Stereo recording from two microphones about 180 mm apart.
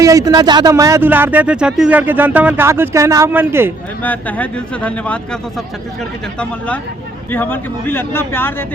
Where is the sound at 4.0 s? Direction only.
10° left (ahead or behind).